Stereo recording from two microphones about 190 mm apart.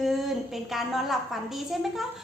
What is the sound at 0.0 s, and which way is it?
A woman's voice, centre (ahead or behind).